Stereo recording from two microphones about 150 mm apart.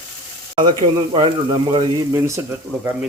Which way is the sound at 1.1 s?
35° right (ahead or behind).